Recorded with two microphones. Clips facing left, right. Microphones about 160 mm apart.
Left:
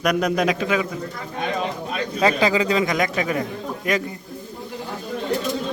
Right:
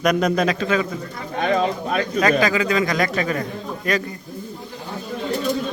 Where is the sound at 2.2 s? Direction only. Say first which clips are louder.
Left 2 dB; 25° left (ahead or behind).